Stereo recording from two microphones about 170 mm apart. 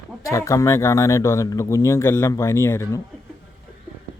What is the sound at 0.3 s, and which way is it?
Speech, 20° left (ahead or behind).